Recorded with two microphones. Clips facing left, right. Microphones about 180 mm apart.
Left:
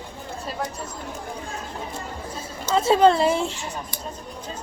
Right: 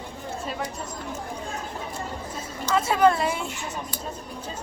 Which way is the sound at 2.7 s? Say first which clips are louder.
Left 4 dB; 30° left (ahead or behind).